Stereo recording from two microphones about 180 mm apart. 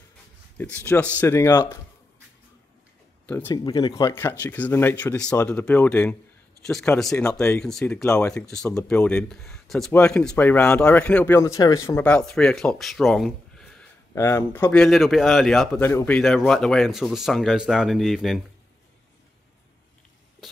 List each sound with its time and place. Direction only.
0.6 s speech: 10° left (ahead or behind)
3.3 s speech: 10° left (ahead or behind)
3.6 s speech: 25° left (ahead or behind); by 13.8 s 5° left (ahead or behind)
14.1 s speech: 15° left (ahead or behind)
15.8 s speech: 15° left (ahead or behind)
16.2 s speech: 5° left (ahead or behind)